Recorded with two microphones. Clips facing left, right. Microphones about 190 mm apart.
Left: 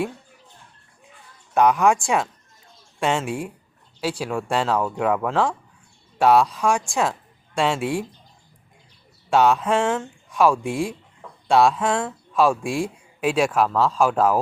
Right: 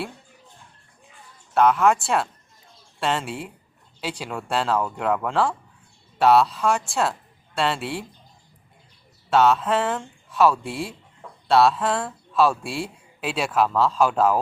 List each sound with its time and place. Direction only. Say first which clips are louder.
1.5 s a man's voice: left 1 dB; 15° left (ahead or behind)
9.3 s a man's voice: left 1 dB; 15° left (ahead or behind)
11.9 s speech: left 2 dB; 5° right (ahead or behind)
12.3 s a man's voice: left 1 dB; 10° left (ahead or behind)